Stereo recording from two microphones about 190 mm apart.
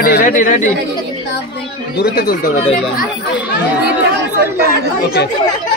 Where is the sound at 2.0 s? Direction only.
55° left (ahead or behind).